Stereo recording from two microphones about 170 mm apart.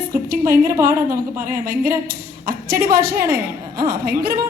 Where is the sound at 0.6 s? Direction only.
15° right (ahead or behind).